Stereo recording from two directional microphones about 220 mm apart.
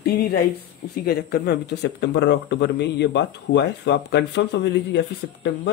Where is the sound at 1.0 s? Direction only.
45° left (ahead or behind).